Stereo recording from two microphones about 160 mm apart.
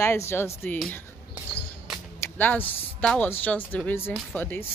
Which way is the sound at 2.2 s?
10° left (ahead or behind).